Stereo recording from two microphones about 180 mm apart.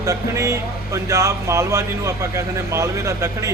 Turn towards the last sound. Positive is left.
turn(degrees=-15)  # may be behind; listen again after turning